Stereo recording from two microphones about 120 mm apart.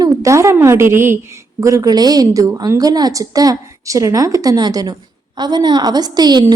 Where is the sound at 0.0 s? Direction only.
25° right (ahead or behind).